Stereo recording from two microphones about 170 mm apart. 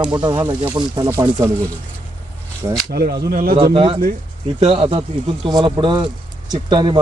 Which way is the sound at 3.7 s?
30° right (ahead or behind).